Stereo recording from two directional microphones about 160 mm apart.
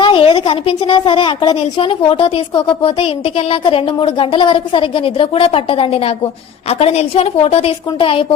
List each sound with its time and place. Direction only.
0.0 s a woman's voice: 30° left (ahead or behind)